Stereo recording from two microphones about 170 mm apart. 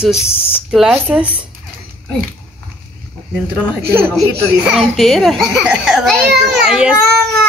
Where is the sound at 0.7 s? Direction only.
5° right (ahead or behind).